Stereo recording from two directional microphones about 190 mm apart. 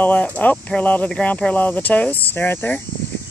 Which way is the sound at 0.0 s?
10° left (ahead or behind).